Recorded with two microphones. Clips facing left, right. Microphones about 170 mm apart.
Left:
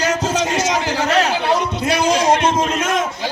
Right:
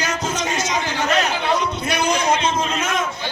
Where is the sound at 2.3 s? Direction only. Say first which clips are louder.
Left 4 dB; 50° left (ahead or behind).